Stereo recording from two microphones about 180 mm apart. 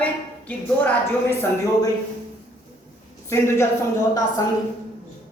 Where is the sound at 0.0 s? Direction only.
10° left (ahead or behind).